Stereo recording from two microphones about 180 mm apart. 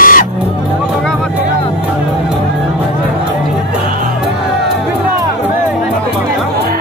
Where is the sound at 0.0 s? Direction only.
50° left (ahead or behind).